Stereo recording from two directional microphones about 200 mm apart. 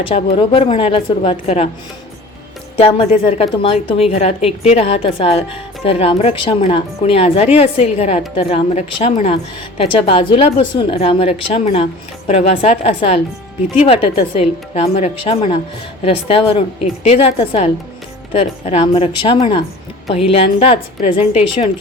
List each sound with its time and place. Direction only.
0.1 s a woman's voice: 30° left (ahead or behind)
2.7 s a woman's voice: 30° left (ahead or behind)